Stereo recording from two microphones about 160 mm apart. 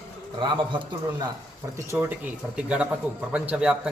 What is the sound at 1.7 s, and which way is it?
A man's voice, 15° right (ahead or behind).